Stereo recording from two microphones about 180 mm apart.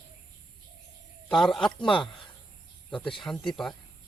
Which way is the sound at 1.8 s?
25° left (ahead or behind).